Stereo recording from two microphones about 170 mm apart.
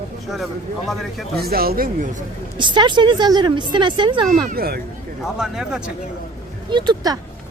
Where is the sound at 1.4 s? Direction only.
65° right (ahead or behind).